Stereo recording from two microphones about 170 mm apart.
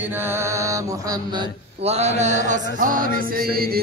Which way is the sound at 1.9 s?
40° right (ahead or behind).